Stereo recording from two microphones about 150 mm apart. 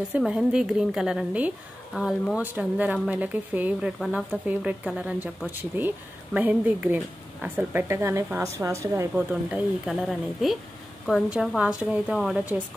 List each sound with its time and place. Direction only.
0.1 s a woman's voice: 5° right (ahead or behind); by 9.2 s 20° right (ahead or behind)
9.3 s a woman's voice: 10° right (ahead or behind)